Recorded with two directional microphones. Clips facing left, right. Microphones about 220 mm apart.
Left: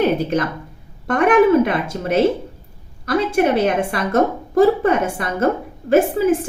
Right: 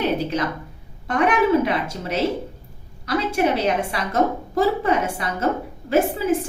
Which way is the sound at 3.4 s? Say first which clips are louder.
Left 4 dB; 55° left (ahead or behind).